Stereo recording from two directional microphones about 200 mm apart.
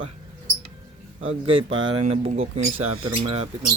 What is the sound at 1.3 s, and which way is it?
Speech, 30° right (ahead or behind).